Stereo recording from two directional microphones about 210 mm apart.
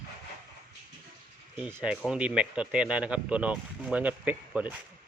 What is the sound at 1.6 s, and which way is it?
Speech, 10° right (ahead or behind).